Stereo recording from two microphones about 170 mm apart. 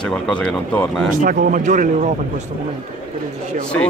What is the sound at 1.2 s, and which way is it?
Speech, 50° right (ahead or behind).